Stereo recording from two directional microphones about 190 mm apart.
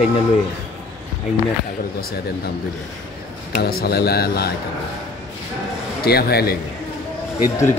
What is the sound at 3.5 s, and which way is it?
A man's voice, 50° left (ahead or behind).